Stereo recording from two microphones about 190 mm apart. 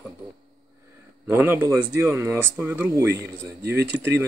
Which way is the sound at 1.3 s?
10° right (ahead or behind).